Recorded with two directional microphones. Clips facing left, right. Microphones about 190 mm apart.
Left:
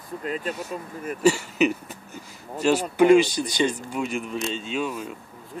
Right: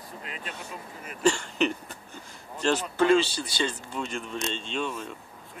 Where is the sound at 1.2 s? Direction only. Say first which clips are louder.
Left 4 dB; 5° left (ahead or behind).